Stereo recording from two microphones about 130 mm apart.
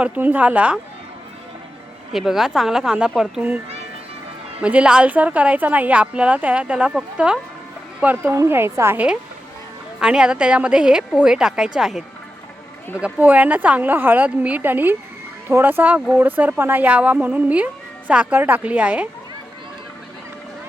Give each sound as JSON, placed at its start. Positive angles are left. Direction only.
{"t": 0.0, "sound": "a woman's voice", "side_deg": -10}
{"t": 2.1, "sound": "a woman's voice", "side_deg": 0}
{"t": 4.6, "sound": "a woman's voice", "side_deg": -10}
{"t": 10.0, "sound": "a woman's voice", "side_deg": -5}